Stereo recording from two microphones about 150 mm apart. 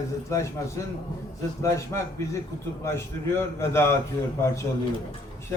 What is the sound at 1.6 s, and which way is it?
A man's voice, 20° left (ahead or behind).